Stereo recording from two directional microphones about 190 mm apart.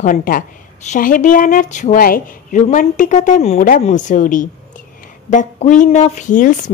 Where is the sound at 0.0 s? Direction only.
45° left (ahead or behind).